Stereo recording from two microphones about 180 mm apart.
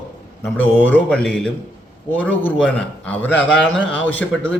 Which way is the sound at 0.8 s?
10° left (ahead or behind).